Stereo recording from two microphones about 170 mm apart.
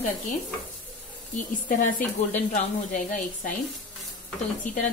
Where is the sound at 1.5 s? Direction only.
50° left (ahead or behind).